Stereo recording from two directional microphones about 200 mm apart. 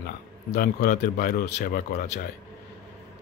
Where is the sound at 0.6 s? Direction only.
50° left (ahead or behind).